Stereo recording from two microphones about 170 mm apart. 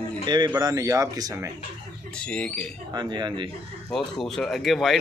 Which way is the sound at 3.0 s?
25° right (ahead or behind).